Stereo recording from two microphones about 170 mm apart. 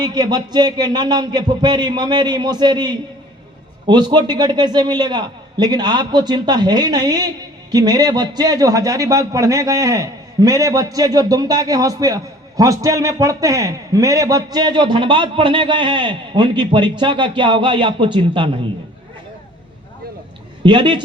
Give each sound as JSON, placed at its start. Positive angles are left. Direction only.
{"t": 0.0, "sound": "a man's voice", "side_deg": -25}
{"t": 20.7, "sound": "a man's voice", "side_deg": -30}